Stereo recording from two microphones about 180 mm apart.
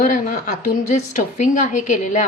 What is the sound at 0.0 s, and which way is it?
A woman's voice, 45° left (ahead or behind).